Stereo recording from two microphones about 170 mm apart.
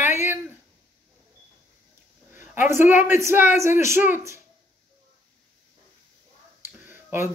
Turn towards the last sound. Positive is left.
turn(degrees=-10)  # may be behind; listen again after turning